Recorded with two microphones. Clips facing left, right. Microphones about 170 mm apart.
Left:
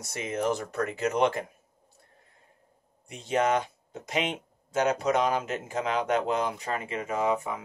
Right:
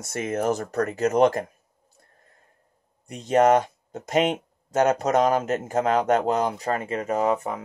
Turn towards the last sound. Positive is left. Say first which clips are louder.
# right 4 dB
turn(degrees=-45)  # may be behind; listen again after turning